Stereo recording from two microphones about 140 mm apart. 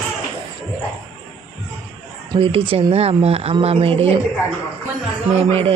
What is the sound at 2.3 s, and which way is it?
Speech, 40° right (ahead or behind).